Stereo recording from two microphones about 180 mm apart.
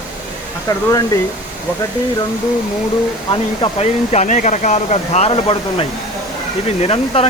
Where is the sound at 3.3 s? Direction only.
30° left (ahead or behind).